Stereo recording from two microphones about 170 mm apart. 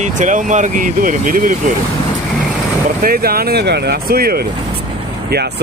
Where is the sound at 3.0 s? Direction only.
60° right (ahead or behind).